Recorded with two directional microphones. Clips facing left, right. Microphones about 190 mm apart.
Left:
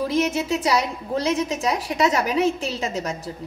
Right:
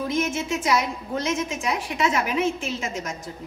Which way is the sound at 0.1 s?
35° left (ahead or behind).